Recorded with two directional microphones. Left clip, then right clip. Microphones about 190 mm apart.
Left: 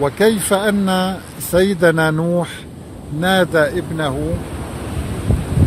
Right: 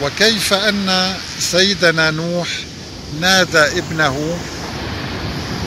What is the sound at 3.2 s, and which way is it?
Speech, 45° left (ahead or behind).